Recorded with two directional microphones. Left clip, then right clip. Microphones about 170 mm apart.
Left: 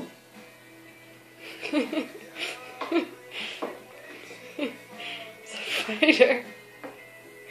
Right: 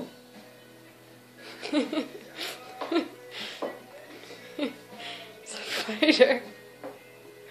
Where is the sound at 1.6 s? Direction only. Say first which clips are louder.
Left 1 dB; 10° right (ahead or behind).